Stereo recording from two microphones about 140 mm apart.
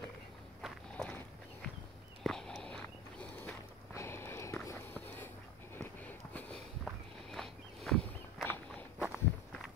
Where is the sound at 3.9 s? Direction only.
20° left (ahead or behind).